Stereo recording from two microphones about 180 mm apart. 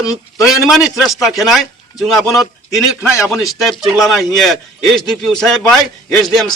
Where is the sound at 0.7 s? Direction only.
Centre (ahead or behind).